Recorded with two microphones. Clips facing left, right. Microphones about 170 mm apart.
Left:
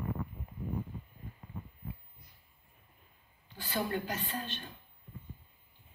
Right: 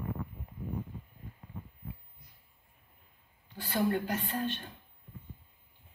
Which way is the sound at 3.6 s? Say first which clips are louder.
Right 4 dB; 55° right (ahead or behind).